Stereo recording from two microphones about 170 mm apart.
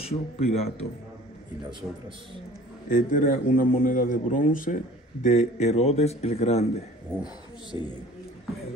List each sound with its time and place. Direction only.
0.0 s speech: 35° left (ahead or behind)
2.9 s a man's voice: 55° left (ahead or behind); by 6.7 s 40° left (ahead or behind)
7.7 s a woman's voice: 20° right (ahead or behind)